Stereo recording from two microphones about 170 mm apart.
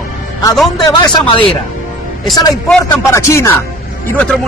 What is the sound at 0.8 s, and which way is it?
Speech, 20° left (ahead or behind).